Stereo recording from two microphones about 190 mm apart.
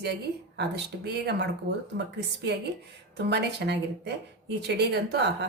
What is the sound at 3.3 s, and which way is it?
Speech, 60° right (ahead or behind).